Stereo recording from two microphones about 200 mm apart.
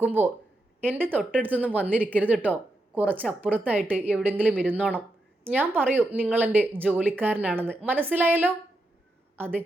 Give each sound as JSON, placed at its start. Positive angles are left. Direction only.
{"t": 0.0, "sound": "speech", "side_deg": -10}